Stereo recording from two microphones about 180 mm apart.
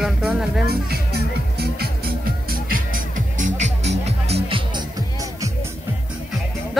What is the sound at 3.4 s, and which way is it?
Music, 40° right (ahead or behind).